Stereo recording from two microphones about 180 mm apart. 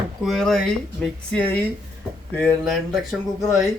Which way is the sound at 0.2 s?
Centre (ahead or behind).